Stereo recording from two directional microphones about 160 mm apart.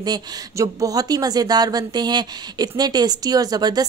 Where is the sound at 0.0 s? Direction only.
25° right (ahead or behind).